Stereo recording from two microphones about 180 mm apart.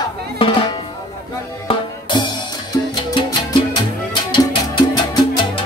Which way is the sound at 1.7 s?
25° left (ahead or behind).